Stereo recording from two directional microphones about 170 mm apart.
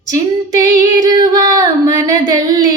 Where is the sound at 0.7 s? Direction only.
20° right (ahead or behind).